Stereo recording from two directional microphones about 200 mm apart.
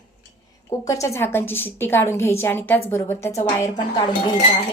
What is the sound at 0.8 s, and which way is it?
A woman's voice, 15° left (ahead or behind).